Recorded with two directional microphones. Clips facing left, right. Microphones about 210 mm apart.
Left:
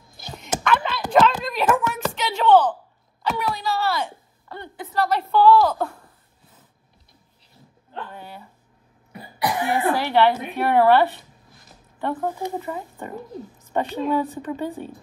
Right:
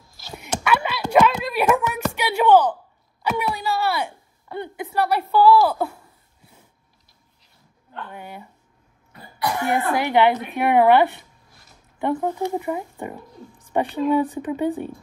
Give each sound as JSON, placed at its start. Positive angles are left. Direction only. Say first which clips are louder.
{"t": 0.7, "sound": "a sound", "louder": "right 1 dB", "side_deg": -10}
{"t": 3.2, "sound": "speech", "louder": "right 1 dB", "side_deg": -10}
{"t": 8.1, "sound": "speech", "louder": "right 2 dB", "side_deg": -10}
{"t": 9.1, "sound": "cough", "louder": "left 1 dB", "side_deg": 15}
{"t": 9.9, "sound": "speech", "louder": "right 3 dB", "side_deg": -15}